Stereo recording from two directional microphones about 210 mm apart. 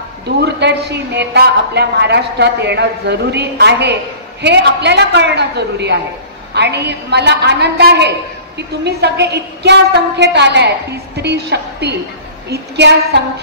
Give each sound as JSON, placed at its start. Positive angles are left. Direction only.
{"t": 0.4, "sound": "a woman's voice", "side_deg": -50}